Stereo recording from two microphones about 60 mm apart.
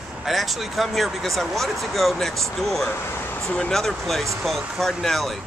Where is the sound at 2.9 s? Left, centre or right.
Left.